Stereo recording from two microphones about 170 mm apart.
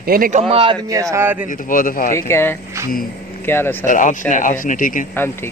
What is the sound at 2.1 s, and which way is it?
Speech, 15° left (ahead or behind).